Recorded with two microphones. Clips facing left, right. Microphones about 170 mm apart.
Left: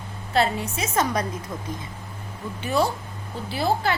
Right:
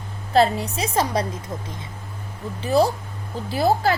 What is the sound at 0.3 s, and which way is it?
Speech, 35° right (ahead or behind).